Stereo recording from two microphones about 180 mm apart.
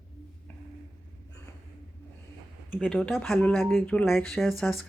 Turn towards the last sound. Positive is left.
turn(degrees=0)  # may be behind; listen again after turning